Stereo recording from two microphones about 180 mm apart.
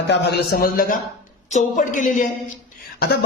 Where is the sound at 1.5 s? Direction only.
45° left (ahead or behind).